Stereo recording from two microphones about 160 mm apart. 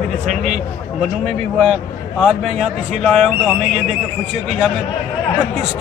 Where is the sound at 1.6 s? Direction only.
Centre (ahead or behind).